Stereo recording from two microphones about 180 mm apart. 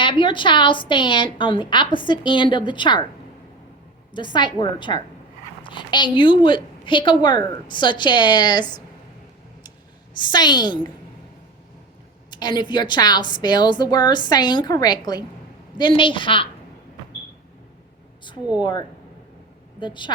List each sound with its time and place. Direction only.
0.0 s a woman's voice: 30° left (ahead or behind)
4.1 s a woman's voice: 25° left (ahead or behind)
10.2 s a woman's voice: 25° left (ahead or behind)
12.3 s a woman's voice: 25° left (ahead or behind)
18.6 s a woman's voice: 25° left (ahead or behind)